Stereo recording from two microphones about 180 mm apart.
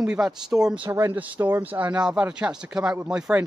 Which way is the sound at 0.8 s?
15° right (ahead or behind).